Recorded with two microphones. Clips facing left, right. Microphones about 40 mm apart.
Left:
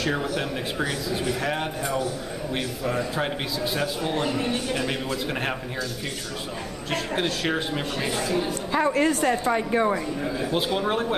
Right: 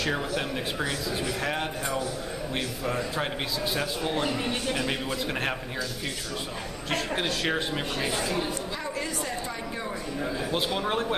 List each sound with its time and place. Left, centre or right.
0.0 s a man's voice: centre
6.9 s a man's voice: centre
8.7 s a woman's voice: left
10.2 s a man's voice: centre